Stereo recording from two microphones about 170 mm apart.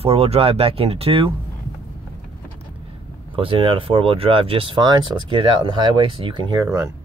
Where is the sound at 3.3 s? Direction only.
30° right (ahead or behind).